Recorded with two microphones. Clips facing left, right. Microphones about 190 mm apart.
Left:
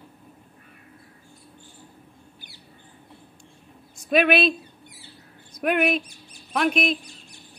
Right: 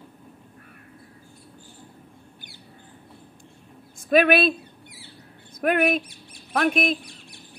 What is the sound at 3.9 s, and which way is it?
Speech, 50° right (ahead or behind).